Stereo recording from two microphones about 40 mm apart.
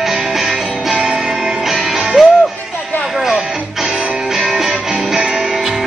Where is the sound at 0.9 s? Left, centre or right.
Right.